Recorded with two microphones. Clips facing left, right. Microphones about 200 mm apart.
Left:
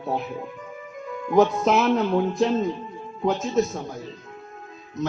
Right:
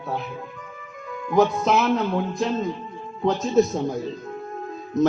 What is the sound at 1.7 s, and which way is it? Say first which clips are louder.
Music: left 1 dB; 25° left (ahead or behind).